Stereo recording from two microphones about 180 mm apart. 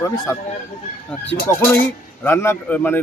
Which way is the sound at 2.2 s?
15° left (ahead or behind).